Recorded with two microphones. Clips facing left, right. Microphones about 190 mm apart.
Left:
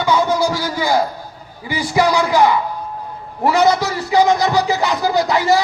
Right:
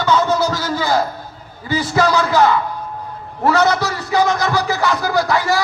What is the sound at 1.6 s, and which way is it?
A man's voice, 15° left (ahead or behind).